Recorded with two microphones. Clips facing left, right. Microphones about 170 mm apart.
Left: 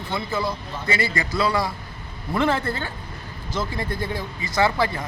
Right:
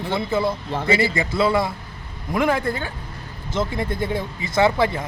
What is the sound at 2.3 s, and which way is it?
Speech, 10° right (ahead or behind).